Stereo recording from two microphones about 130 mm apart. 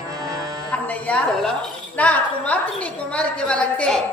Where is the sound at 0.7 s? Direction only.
10° left (ahead or behind).